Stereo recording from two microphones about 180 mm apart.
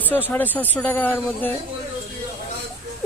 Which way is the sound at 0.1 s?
10° left (ahead or behind).